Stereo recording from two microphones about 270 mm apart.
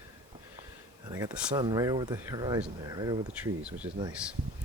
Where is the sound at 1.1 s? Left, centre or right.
Centre.